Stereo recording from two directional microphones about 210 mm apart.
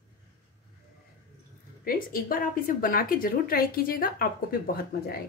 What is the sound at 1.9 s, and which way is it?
A woman's voice, 40° left (ahead or behind).